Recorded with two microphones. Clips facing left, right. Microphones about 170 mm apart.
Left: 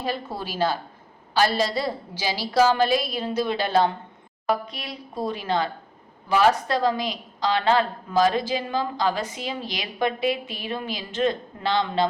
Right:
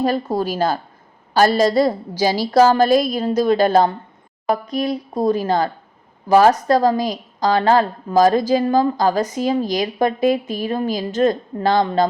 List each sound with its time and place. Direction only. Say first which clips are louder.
0.0 s a woman's voice: right 10 dB; 45° right (ahead or behind)